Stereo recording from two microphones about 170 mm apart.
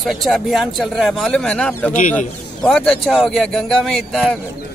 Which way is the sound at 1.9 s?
50° left (ahead or behind).